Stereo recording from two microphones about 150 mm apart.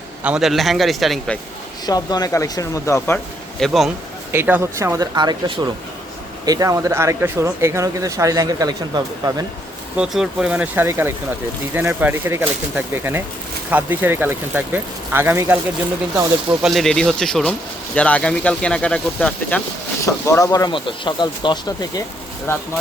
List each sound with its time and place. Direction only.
0.2 s a man's voice: 5° right (ahead or behind)
1.9 s speech: 25° left (ahead or behind)
3.6 s a man's voice: centre (ahead or behind)
4.3 s speech: 15° right (ahead or behind); by 9.4 s 30° right (ahead or behind)
10.0 s speech: 5° right (ahead or behind)
16.5 s a man's voice: centre (ahead or behind)
20.1 s speech: 20° left (ahead or behind)